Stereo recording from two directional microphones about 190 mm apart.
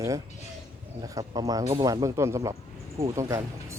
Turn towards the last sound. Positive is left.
turn(degrees=-15)  # may be behind; listen again after turning